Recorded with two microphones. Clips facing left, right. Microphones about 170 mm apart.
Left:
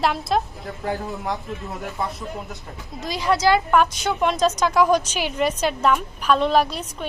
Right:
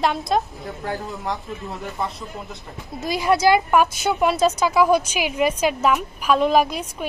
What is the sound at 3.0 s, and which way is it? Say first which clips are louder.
A woman's voice: right 2 dB; 10° right (ahead or behind).